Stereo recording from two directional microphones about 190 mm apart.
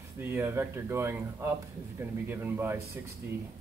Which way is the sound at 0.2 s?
10° right (ahead or behind).